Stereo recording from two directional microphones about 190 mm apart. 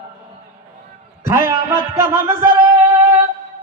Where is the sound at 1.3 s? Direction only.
15° right (ahead or behind).